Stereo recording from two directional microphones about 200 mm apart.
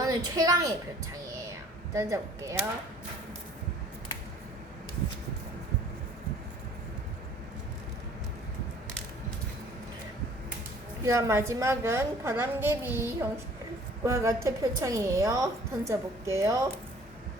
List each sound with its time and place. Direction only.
0.0 s a woman's voice: 20° right (ahead or behind)
1.9 s a woman's voice: 15° right (ahead or behind)
11.0 s a woman's voice: 15° right (ahead or behind)